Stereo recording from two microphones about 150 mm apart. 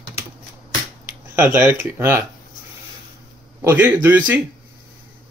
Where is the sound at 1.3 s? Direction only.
15° right (ahead or behind).